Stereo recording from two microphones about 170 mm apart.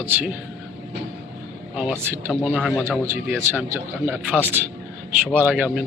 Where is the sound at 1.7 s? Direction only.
10° right (ahead or behind).